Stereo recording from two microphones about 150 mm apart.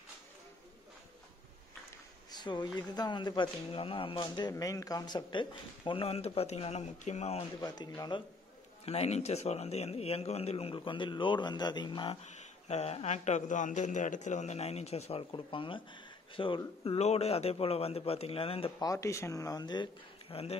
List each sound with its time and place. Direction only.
2.3 s speech: 30° left (ahead or behind); by 7.4 s 45° left (ahead or behind)
7.6 s speech: 30° left (ahead or behind)
8.8 s speech: 45° left (ahead or behind)
12.2 s speech: 50° left (ahead or behind)
18.8 s speech: 20° left (ahead or behind); by 20.5 s 40° left (ahead or behind)